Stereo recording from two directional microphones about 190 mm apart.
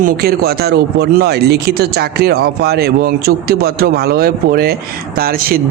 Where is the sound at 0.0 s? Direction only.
55° right (ahead or behind).